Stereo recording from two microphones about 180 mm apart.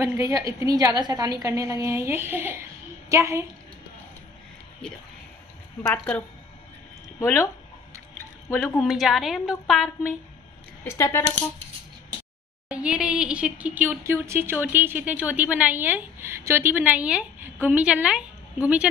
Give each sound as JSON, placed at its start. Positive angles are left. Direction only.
{"t": 0.0, "sound": "speech", "side_deg": -20}
{"t": 5.9, "sound": "speech", "side_deg": 5}
{"t": 8.5, "sound": "speech", "side_deg": 10}
{"t": 8.8, "sound": "a woman's voice", "side_deg": 0}
{"t": 10.8, "sound": "speech", "side_deg": 15}
{"t": 12.6, "sound": "speech", "side_deg": -5}